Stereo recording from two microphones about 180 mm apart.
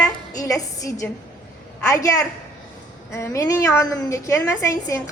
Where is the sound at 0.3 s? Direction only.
20° left (ahead or behind).